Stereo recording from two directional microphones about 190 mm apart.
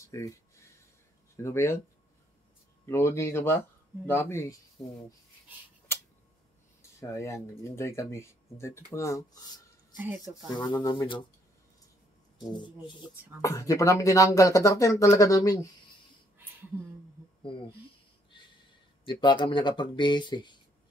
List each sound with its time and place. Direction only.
0.0 s a sound: 15° left (ahead or behind)
1.3 s speech: 15° left (ahead or behind)
2.9 s speech: 15° left (ahead or behind)
4.8 s speech: centre (ahead or behind)
7.0 s speech: 15° left (ahead or behind)
10.5 s speech: 20° left (ahead or behind)
12.4 s speech: 25° left (ahead or behind)
19.0 s speech: 25° left (ahead or behind)